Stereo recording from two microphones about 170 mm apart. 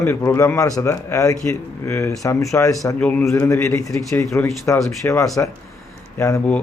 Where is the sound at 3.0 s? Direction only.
10° left (ahead or behind).